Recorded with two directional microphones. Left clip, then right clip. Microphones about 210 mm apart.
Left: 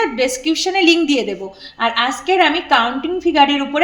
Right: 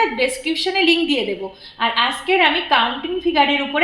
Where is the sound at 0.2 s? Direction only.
55° left (ahead or behind).